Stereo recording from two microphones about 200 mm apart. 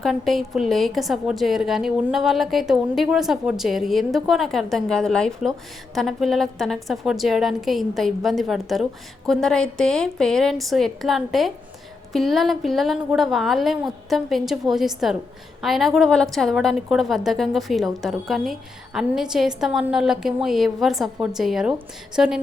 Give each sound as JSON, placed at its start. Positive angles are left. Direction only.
{"t": 0.0, "sound": "a woman's voice", "side_deg": 0}